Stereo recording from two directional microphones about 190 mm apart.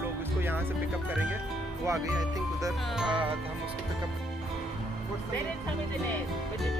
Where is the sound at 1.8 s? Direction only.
15° right (ahead or behind).